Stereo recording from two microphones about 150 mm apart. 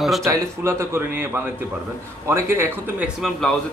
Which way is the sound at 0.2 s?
20° right (ahead or behind).